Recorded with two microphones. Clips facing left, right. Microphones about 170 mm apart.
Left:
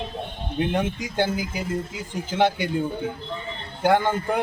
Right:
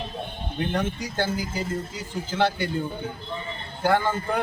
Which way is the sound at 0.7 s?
15° left (ahead or behind).